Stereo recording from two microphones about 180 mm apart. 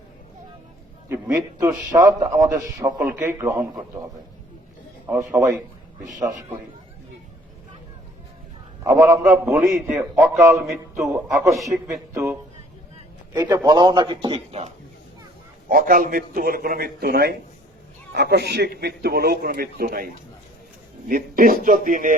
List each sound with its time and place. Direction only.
1.1 s a man's voice: 15° right (ahead or behind)
5.0 s a man's voice: 15° right (ahead or behind)
8.8 s a man's voice: 15° right (ahead or behind); by 14.7 s 35° right (ahead or behind)
15.7 s a man's voice: 50° right (ahead or behind)
21.1 s speech: 50° right (ahead or behind)